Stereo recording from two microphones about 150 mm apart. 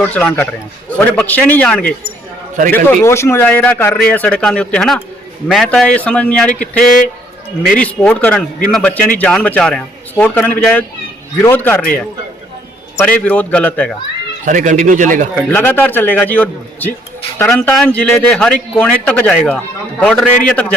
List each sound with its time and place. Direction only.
0.0 s a man's voice: 10° left (ahead or behind)
14.4 s speech: 60° right (ahead or behind)
15.4 s a man's voice: 10° left (ahead or behind)